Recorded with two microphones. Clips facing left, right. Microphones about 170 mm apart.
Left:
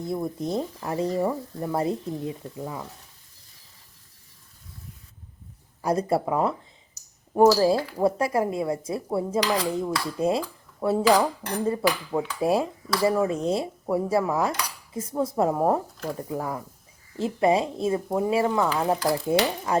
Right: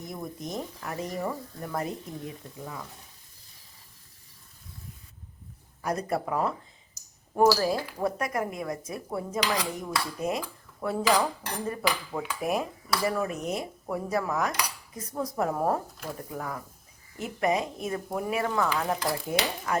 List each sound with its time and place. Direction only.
0.0 s speech: 30° left (ahead or behind)
5.8 s speech: 30° left (ahead or behind)
7.6 s speech: 25° left (ahead or behind)